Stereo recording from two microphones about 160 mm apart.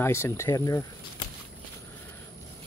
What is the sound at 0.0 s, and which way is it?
Speech, 15° left (ahead or behind).